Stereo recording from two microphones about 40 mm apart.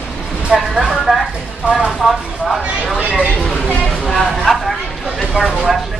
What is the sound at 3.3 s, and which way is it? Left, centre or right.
Speech, centre.